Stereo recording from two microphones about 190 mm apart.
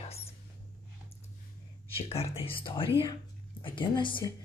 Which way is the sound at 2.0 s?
30° left (ahead or behind).